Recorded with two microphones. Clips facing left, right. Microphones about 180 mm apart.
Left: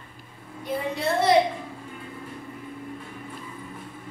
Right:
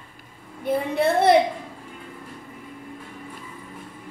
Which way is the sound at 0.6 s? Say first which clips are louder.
Right 6 dB; 55° right (ahead or behind).